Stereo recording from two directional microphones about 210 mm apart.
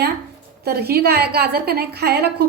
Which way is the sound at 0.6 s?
50° right (ahead or behind).